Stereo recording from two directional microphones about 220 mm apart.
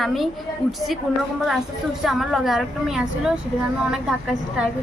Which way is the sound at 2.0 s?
Centre (ahead or behind).